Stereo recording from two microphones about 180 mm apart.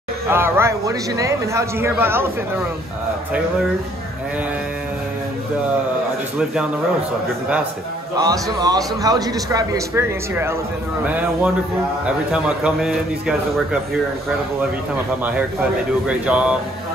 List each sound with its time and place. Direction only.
0.3 s a man's voice: 15° right (ahead or behind)
8.2 s a man's voice: 20° right (ahead or behind); by 13.4 s 5° right (ahead or behind)
16.1 s a man's voice: 5° right (ahead or behind)